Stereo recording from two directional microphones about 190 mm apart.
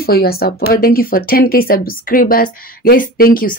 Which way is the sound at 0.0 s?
55° left (ahead or behind).